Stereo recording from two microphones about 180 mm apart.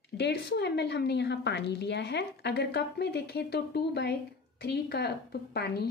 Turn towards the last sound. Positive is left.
turn(degrees=65)  # may be behind; listen again after turning